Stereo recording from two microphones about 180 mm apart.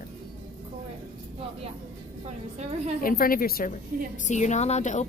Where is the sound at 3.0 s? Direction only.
55° left (ahead or behind).